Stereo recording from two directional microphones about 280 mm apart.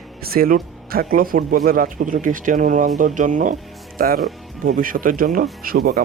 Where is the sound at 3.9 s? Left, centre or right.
Right.